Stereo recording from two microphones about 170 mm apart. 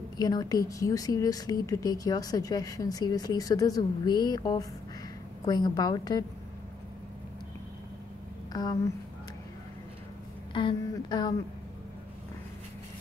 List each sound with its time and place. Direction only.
0.2 s speech: 20° left (ahead or behind)
8.5 s speech: 25° left (ahead or behind)
10.5 s speech: 30° left (ahead or behind)